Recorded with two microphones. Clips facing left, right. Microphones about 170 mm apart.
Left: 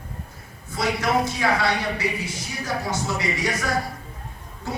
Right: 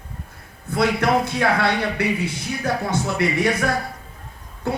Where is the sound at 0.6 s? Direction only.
60° right (ahead or behind).